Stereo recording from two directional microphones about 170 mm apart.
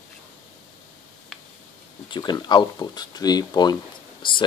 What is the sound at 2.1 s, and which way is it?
Speech, 25° left (ahead or behind).